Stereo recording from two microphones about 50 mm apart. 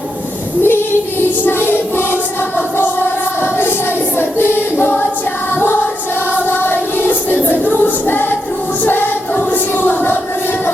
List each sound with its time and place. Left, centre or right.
0.6 s child singing: left
1.5 s music: left
4.2 s choir: left
6.5 s music: left